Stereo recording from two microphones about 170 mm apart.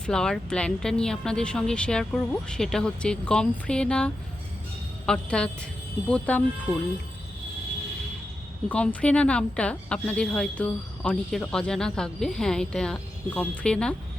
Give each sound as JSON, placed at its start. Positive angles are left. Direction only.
{"t": 0.0, "sound": "a woman's voice", "side_deg": 5}
{"t": 8.7, "sound": "a woman's voice", "side_deg": 5}